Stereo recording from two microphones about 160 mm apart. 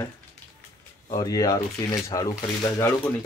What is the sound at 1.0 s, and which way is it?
Speech, 25° left (ahead or behind).